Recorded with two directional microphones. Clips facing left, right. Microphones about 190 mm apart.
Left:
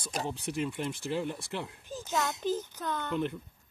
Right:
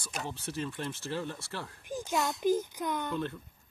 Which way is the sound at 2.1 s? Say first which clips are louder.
Right 3 dB; 15° right (ahead or behind).